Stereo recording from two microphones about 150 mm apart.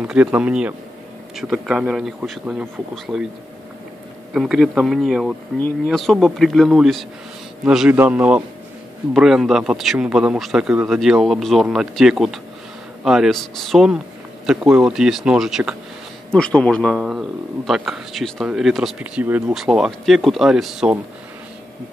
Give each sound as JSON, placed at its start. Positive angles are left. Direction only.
{"t": 0.0, "sound": "a man's voice", "side_deg": -10}
{"t": 4.3, "sound": "a man's voice", "side_deg": 0}